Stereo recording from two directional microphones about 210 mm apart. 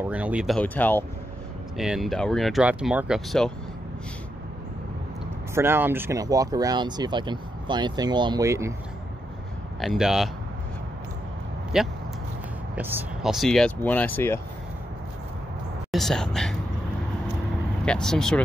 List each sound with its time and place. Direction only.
0.0 s speech: 5° right (ahead or behind)
5.5 s speech: 10° right (ahead or behind)
9.8 s speech: centre (ahead or behind)
11.7 s speech: centre (ahead or behind)
15.9 s speech: centre (ahead or behind)
17.8 s speech: 5° left (ahead or behind)